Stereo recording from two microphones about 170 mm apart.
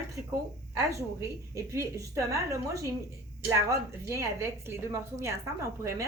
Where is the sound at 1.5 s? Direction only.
15° right (ahead or behind).